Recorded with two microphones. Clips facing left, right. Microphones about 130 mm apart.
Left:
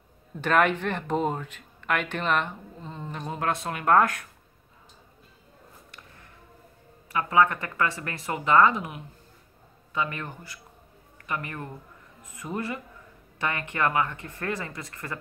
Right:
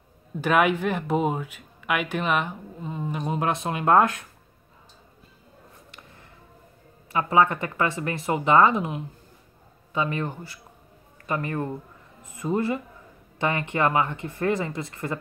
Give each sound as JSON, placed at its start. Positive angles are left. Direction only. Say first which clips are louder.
{"t": 0.4, "sound": "speech", "louder": "right 2 dB", "side_deg": -10}
{"t": 7.1, "sound": "a man's voice", "louder": "right 2 dB", "side_deg": -25}